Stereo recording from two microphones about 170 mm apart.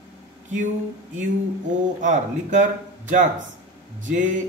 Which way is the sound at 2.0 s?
45° right (ahead or behind).